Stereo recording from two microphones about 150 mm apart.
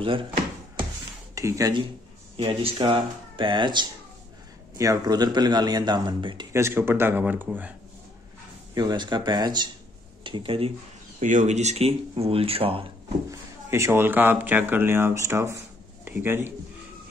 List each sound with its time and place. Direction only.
0.0 s speech: 35° right (ahead or behind)
1.3 s speech: 20° right (ahead or behind)
2.3 s speech: 40° right (ahead or behind)
6.5 s speech: 15° right (ahead or behind)
8.7 s speech: 30° right (ahead or behind)
11.1 s speech: 55° right (ahead or behind)
13.3 s speech: 20° right (ahead or behind)